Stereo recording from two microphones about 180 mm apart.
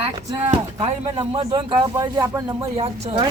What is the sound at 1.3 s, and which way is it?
Speech, 25° right (ahead or behind).